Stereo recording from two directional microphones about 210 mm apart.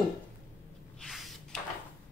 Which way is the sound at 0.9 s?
Centre (ahead or behind).